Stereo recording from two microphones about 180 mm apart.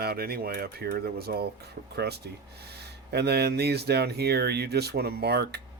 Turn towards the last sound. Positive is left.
turn(degrees=-65)  # may be behind; listen again after turning